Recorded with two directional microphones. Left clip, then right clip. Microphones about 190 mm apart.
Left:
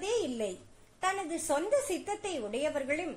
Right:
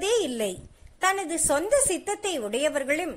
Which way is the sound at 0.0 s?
25° right (ahead or behind).